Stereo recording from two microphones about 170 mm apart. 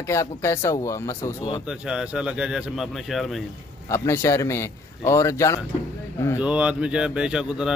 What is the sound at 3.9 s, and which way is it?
Speech, 15° left (ahead or behind).